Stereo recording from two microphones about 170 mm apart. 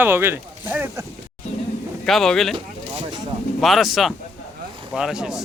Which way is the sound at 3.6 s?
Centre (ahead or behind).